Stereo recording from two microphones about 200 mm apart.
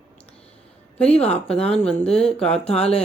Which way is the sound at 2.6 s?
30° left (ahead or behind).